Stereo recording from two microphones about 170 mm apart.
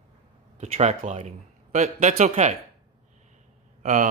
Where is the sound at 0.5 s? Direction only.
40° right (ahead or behind).